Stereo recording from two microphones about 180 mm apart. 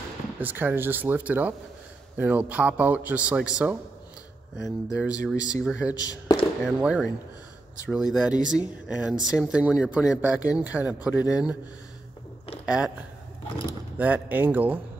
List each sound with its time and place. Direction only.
0.4 s a man's voice: 10° right (ahead or behind)
5.1 s speech: 20° left (ahead or behind)
5.6 s speech: 5° right (ahead or behind)
5.9 s speech: 20° left (ahead or behind)
6.6 s a man's voice: 5° right (ahead or behind)
12.6 s speech: 5° right (ahead or behind)
13.9 s a man's voice: 10° right (ahead or behind)